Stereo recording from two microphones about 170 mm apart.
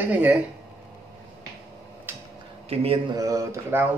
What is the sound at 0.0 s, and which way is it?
Speech, 10° right (ahead or behind).